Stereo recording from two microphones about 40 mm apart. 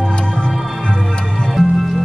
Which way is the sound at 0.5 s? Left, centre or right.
Centre.